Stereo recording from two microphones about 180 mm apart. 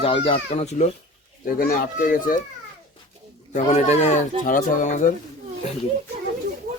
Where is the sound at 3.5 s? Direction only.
40° left (ahead or behind).